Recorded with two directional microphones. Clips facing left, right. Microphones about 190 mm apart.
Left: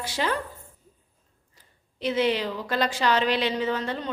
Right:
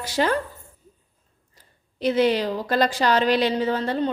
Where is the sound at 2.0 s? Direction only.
40° right (ahead or behind).